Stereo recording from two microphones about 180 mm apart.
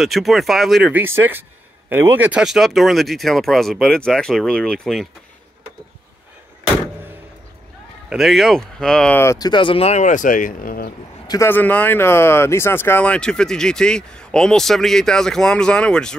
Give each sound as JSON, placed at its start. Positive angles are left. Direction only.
{"t": 0.0, "sound": "speech", "side_deg": 0}
{"t": 8.1, "sound": "speech", "side_deg": 0}
{"t": 11.2, "sound": "speech", "side_deg": 15}